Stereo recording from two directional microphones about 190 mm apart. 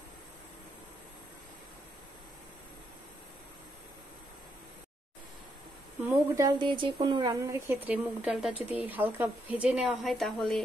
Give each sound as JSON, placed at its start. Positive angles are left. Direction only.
{"t": 6.0, "sound": "speech", "side_deg": -20}